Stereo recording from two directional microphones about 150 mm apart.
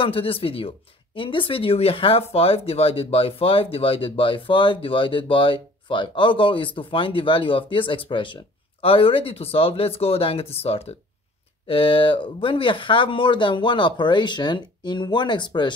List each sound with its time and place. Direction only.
0.0 s speech: 40° left (ahead or behind)